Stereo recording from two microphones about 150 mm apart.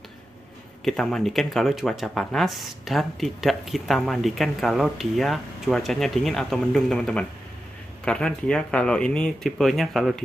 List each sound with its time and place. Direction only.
0.8 s speech: centre (ahead or behind)